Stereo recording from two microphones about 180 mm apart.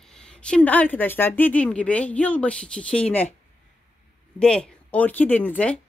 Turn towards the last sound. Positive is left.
turn(degrees=10)  # may be behind; listen again after turning